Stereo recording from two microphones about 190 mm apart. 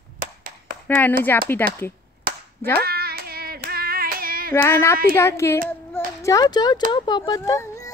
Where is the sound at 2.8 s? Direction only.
55° right (ahead or behind).